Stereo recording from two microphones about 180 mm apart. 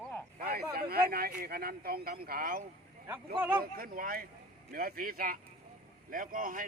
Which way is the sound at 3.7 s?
55° right (ahead or behind).